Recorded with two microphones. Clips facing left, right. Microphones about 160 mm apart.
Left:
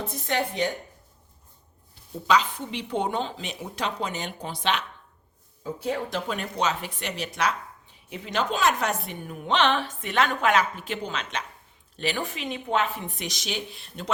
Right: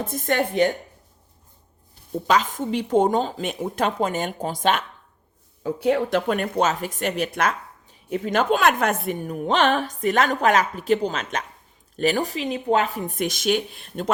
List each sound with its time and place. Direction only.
0.0 s a woman's voice: 50° right (ahead or behind)
2.2 s a woman's voice: 45° right (ahead or behind)
5.6 s a woman's voice: 65° right (ahead or behind); by 14.1 s 50° right (ahead or behind)